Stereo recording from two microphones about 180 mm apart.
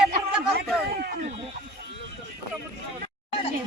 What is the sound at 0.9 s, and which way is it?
Speech, 60° right (ahead or behind).